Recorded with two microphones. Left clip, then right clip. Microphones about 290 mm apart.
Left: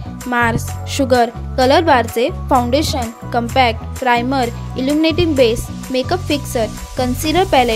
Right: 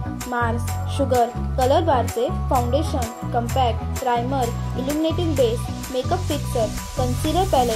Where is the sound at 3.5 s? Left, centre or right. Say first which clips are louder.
Left 10 dB; left.